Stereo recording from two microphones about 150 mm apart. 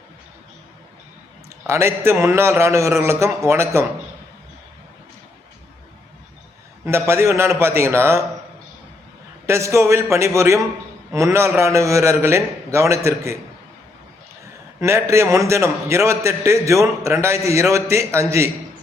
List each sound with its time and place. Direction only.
1.6 s a man's voice: 20° right (ahead or behind)
7.1 s a man's voice: 15° right (ahead or behind)
9.5 s a man's voice: 20° right (ahead or behind)
14.8 s a man's voice: 20° right (ahead or behind)